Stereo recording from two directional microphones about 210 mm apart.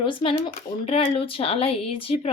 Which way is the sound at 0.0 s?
25° left (ahead or behind).